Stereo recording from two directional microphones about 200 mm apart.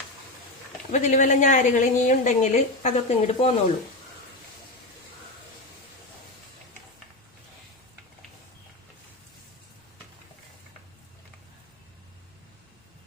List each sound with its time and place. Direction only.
0.9 s a woman's voice: 35° left (ahead or behind)